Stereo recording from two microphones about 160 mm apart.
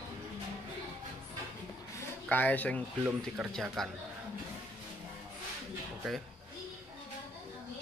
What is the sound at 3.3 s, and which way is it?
Speech, 5° right (ahead or behind).